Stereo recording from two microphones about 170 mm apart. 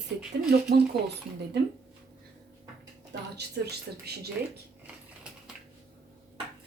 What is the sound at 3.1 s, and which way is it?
A woman's voice, 70° right (ahead or behind).